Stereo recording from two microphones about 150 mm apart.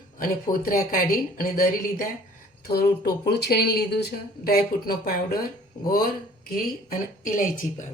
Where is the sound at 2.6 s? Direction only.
85° left; by 7.7 s 65° left (ahead or behind).